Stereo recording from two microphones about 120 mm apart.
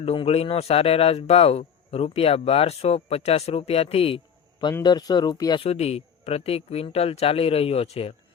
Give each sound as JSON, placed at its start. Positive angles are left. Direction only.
{"t": 0.0, "sound": "a man's voice", "side_deg": 55}
{"t": 4.8, "sound": "speech", "side_deg": 35}
{"t": 5.6, "sound": "a man's voice", "side_deg": 60}